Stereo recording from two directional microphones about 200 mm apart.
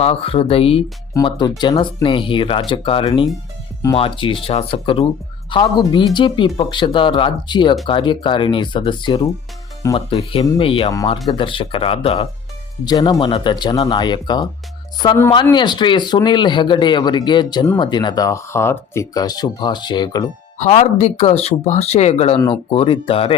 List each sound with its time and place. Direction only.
0.0 s speech: 30° left (ahead or behind)
20.6 s speech: 35° left (ahead or behind)